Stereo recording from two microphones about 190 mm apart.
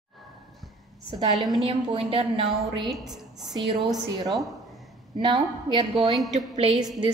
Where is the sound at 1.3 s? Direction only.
Centre (ahead or behind).